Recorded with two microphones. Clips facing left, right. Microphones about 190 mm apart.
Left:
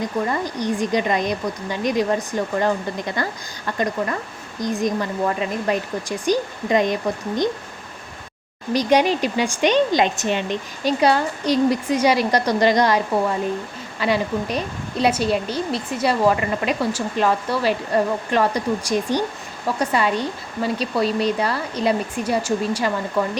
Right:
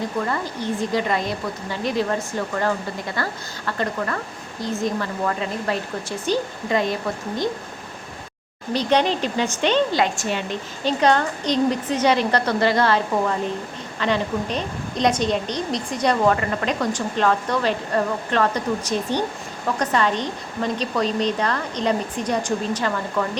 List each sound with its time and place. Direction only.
0.0 s a woman's voice: 15° left (ahead or behind)
8.7 s a woman's voice: 10° left (ahead or behind)